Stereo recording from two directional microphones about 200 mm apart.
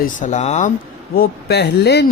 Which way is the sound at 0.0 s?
40° left (ahead or behind).